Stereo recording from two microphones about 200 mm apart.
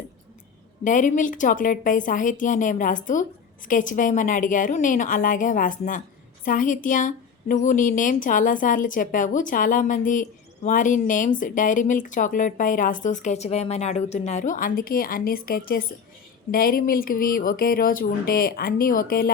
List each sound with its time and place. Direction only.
0.9 s a woman's voice: 40° left (ahead or behind)